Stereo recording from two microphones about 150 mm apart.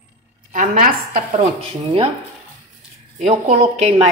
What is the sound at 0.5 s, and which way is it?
A woman's voice, 60° right (ahead or behind).